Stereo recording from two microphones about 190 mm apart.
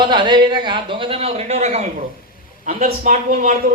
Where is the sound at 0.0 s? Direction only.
25° right (ahead or behind).